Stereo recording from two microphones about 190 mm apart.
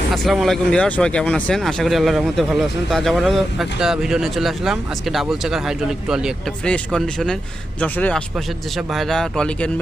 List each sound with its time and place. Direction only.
0.1 s speech: centre (ahead or behind)